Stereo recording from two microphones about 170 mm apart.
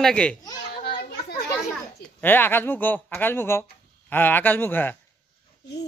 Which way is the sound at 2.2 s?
10° left (ahead or behind).